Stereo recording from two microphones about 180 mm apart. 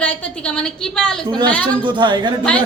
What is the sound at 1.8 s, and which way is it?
Speech, 25° right (ahead or behind).